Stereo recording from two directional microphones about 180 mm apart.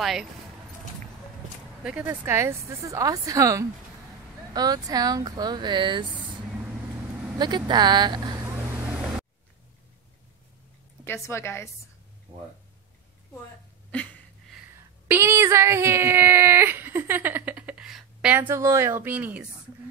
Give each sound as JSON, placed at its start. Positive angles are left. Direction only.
{"t": 0.0, "sound": "speech", "side_deg": 0}
{"t": 1.8, "sound": "speech", "side_deg": -5}
{"t": 7.3, "sound": "speech", "side_deg": -25}
{"t": 11.1, "sound": "a woman's voice", "side_deg": 15}
{"t": 15.0, "sound": "speech", "side_deg": -15}